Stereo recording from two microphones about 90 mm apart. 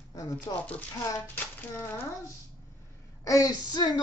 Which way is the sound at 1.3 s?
25° left (ahead or behind).